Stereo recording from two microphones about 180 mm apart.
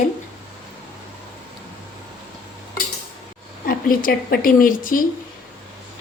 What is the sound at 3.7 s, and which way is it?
A woman's voice, 55° left (ahead or behind).